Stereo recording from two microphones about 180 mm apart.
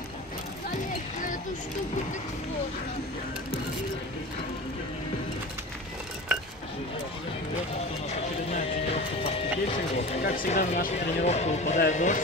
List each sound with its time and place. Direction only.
8.1 s music: 35° left (ahead or behind)
10.2 s a sound: 50° left (ahead or behind)
11.2 s speech: 40° left (ahead or behind)